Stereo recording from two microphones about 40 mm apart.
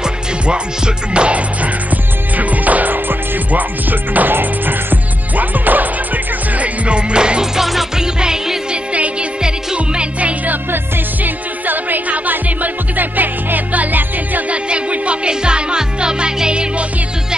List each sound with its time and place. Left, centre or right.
0.0 s music: right
5.4 s music: right
6.6 s music: right
7.5 s music: centre
8.0 s music: centre
11.2 s music: right
14.5 s music: right